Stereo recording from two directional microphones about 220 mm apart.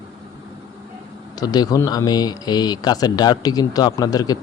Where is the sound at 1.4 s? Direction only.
15° left (ahead or behind).